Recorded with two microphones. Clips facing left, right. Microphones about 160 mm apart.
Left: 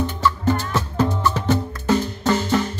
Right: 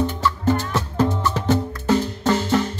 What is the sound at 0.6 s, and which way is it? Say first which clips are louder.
Music: even; 25° right (ahead or behind).